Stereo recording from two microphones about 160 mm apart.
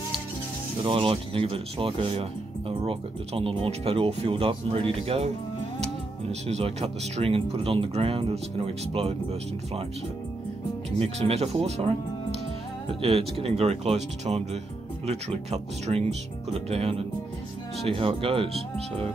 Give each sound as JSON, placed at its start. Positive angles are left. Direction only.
{"t": 0.8, "sound": "speech", "side_deg": -35}
{"t": 6.4, "sound": "speech", "side_deg": -40}
{"t": 11.0, "sound": "speech", "side_deg": -40}
{"t": 13.0, "sound": "speech", "side_deg": -35}